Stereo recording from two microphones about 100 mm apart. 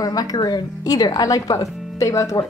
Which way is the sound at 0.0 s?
40° left (ahead or behind).